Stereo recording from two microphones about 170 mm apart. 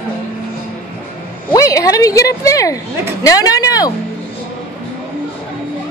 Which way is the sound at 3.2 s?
20° left (ahead or behind).